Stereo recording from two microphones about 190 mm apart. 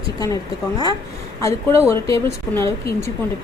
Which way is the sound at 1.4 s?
15° left (ahead or behind).